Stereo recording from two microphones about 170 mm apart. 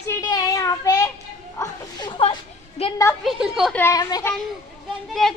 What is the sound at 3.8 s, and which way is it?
Speech, 20° left (ahead or behind).